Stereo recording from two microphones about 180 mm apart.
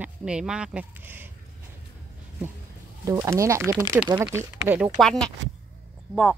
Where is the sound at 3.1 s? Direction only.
15° right (ahead or behind).